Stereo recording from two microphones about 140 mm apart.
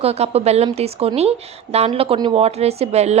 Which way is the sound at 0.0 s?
45° right (ahead or behind).